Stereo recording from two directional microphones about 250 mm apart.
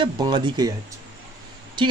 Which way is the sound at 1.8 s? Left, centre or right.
Centre.